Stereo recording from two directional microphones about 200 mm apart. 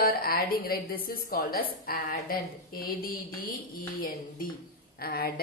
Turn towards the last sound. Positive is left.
turn(degrees=50)  # may be behind; listen again after turning